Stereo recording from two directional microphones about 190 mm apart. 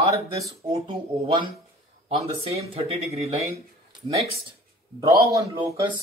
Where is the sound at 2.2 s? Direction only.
30° right (ahead or behind).